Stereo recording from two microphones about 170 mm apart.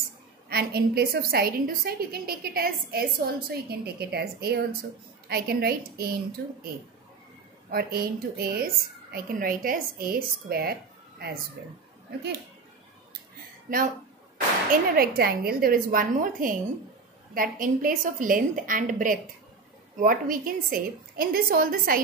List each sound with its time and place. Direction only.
0.5 s a woman's voice: 65° right (ahead or behind)
7.7 s a woman's voice: 65° right (ahead or behind)
14.7 s a woman's voice: 60° right (ahead or behind)